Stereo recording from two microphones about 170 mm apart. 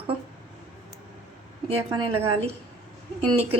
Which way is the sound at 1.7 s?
35° right (ahead or behind).